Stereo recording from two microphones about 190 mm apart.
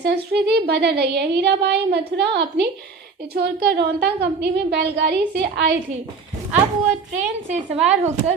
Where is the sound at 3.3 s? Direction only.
60° right (ahead or behind).